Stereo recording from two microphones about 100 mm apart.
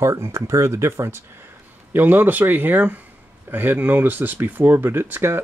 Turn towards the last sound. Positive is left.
turn(degrees=-20)  # may be behind; listen again after turning